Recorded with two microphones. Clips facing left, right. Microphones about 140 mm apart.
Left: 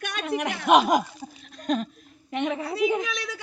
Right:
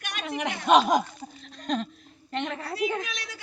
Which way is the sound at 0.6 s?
5° left (ahead or behind).